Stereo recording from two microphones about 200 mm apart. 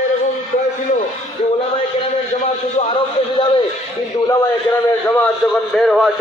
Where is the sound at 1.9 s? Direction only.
30° left (ahead or behind).